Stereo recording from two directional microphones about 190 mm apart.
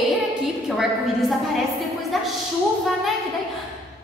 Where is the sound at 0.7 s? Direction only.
Centre (ahead or behind).